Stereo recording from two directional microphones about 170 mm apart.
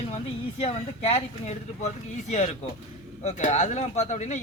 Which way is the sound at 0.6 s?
35° left (ahead or behind).